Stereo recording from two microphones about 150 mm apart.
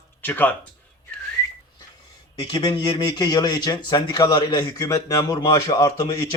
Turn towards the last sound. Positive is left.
turn(degrees=25)  # may be behind; listen again after turning